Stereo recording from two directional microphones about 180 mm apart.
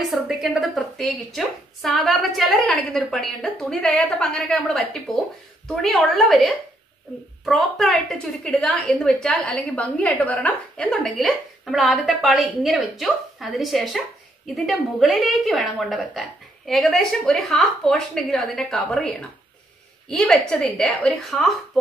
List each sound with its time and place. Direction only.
0.0 s a woman's voice: centre (ahead or behind)